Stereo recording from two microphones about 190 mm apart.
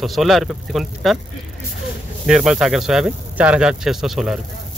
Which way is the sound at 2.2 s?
5° right (ahead or behind).